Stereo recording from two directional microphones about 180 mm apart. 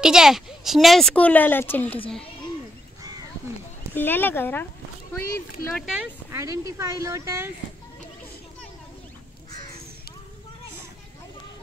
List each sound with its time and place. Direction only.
0.0 s speech: 5° right (ahead or behind)
3.9 s speech: 10° left (ahead or behind)
5.8 s speech: centre (ahead or behind)
6.3 s speech: 20° right (ahead or behind)